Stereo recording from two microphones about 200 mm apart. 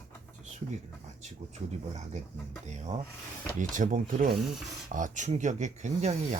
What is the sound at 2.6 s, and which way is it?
Speech, 35° right (ahead or behind).